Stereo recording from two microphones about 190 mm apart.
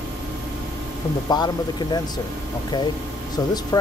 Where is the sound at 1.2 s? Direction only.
20° left (ahead or behind).